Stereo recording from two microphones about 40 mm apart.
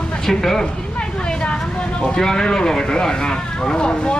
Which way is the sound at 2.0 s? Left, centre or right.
Centre.